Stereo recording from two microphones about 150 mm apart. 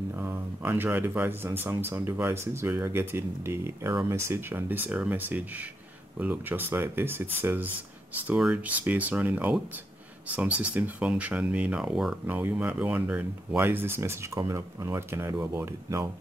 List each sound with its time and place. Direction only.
0.2 s speech: 15° right (ahead or behind)